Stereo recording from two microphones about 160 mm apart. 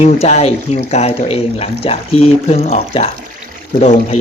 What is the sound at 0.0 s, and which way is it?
Speech, 45° left (ahead or behind).